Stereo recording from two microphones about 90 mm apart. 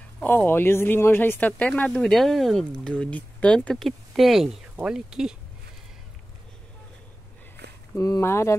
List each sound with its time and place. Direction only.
0.5 s speech: 25° left (ahead or behind)
1.9 s speech: 5° left (ahead or behind)
3.5 s speech: 5° left (ahead or behind)
7.9 s speech: 35° left (ahead or behind)